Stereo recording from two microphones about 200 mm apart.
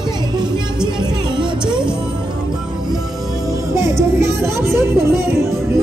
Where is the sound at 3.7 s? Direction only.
15° right (ahead or behind).